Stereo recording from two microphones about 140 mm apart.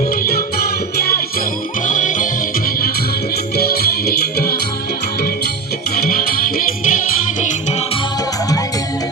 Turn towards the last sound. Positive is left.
turn(degrees=60)  # may be behind; listen again after turning